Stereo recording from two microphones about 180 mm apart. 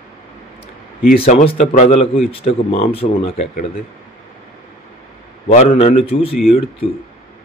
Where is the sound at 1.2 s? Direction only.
35° left (ahead or behind).